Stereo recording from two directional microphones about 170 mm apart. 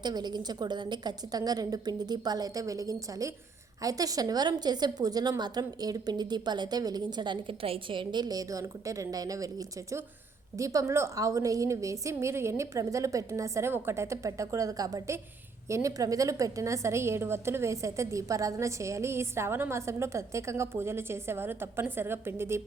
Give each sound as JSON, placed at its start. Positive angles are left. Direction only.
{"t": 0.0, "sound": "a woman's voice", "side_deg": -25}